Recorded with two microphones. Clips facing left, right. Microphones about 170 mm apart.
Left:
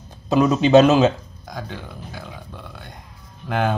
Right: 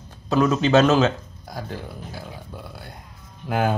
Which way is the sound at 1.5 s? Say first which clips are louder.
Even; 5° right (ahead or behind).